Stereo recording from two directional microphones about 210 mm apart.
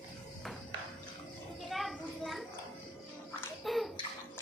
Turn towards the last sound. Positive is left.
turn(degrees=0)  # may be behind; listen again after turning